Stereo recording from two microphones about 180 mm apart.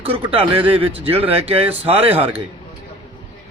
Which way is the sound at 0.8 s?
30° right (ahead or behind).